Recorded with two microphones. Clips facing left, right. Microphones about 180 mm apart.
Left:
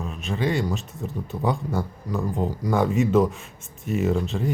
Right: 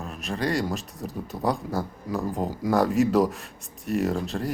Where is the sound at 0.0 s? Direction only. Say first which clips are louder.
Left 2 dB; centre (ahead or behind).